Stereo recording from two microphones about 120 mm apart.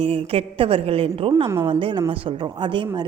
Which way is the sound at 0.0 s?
55° right (ahead or behind).